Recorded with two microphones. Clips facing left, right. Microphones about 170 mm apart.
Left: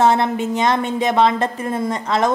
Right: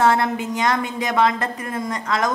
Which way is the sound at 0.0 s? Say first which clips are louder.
Left 2 dB; 25° left (ahead or behind).